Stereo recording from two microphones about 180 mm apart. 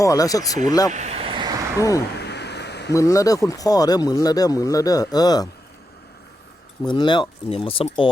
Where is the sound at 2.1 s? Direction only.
65° left (ahead or behind).